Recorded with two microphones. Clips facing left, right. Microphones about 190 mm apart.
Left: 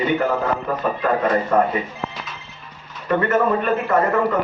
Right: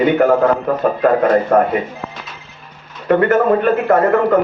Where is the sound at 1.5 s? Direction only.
55° right (ahead or behind).